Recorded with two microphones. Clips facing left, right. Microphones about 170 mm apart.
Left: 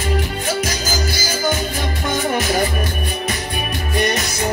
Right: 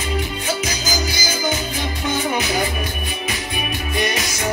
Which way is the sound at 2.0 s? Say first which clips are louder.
Left 2 dB; 50° left (ahead or behind).